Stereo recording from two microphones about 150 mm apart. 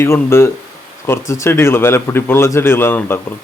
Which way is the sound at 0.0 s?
15° left (ahead or behind).